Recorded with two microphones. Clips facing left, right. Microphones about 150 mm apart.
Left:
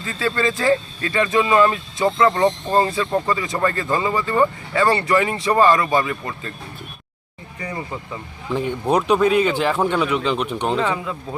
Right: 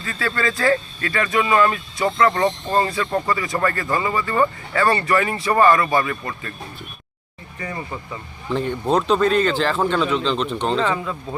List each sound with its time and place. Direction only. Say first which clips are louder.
0.0 s speech: left 2 dB; 20° left (ahead or behind)
7.6 s speech: left 1 dB; 15° left (ahead or behind)